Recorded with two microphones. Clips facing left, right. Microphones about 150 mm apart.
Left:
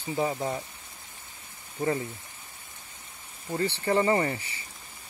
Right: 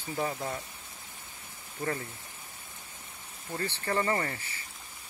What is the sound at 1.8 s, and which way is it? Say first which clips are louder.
Speech: left 6 dB; 20° left (ahead or behind).